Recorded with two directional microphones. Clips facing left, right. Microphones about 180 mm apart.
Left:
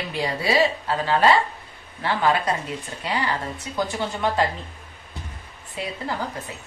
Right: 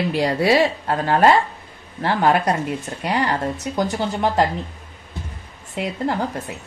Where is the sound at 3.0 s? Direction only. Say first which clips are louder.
Right 5 dB; 65° right (ahead or behind).